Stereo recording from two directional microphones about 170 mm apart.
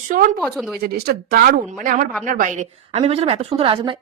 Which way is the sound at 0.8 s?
60° right (ahead or behind).